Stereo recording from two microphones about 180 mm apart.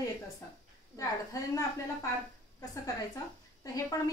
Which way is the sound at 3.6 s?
20° left (ahead or behind).